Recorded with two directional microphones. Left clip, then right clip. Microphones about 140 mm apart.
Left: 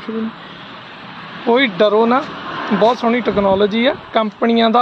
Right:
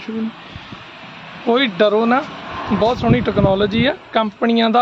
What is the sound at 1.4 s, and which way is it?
Speech, 20° right (ahead or behind).